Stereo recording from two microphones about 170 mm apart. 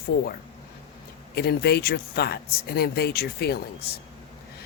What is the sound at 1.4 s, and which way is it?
Speech, 70° left (ahead or behind).